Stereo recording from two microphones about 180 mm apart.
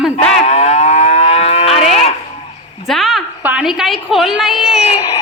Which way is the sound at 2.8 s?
Centre (ahead or behind).